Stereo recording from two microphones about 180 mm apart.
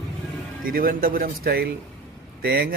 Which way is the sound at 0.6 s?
55° right (ahead or behind).